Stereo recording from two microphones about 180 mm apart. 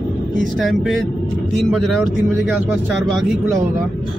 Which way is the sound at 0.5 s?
Centre (ahead or behind).